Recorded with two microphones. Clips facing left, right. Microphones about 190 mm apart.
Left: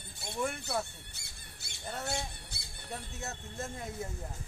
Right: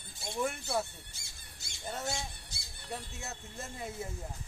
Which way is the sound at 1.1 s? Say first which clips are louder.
Left 2 dB; 60° left (ahead or behind).